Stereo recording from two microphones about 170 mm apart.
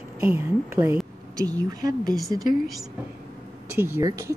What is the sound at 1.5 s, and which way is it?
Speech, 20° right (ahead or behind).